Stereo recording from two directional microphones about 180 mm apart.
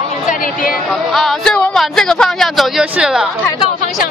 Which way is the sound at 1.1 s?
Centre (ahead or behind).